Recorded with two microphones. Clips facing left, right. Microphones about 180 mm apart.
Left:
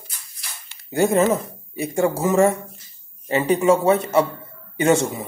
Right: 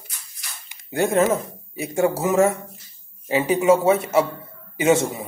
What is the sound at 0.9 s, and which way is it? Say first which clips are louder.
Speech: left 1 dB; centre (ahead or behind).